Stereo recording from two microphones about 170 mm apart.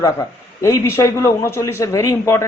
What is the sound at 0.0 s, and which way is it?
A man's voice, 20° left (ahead or behind).